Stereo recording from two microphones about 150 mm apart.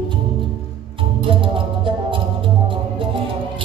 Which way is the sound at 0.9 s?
35° right (ahead or behind).